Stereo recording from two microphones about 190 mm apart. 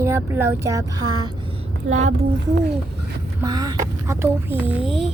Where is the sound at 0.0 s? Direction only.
10° right (ahead or behind).